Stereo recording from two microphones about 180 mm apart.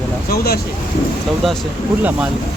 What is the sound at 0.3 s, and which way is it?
Speech, 60° left (ahead or behind).